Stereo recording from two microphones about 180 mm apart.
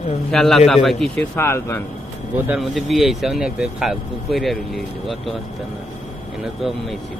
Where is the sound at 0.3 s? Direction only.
5° left (ahead or behind).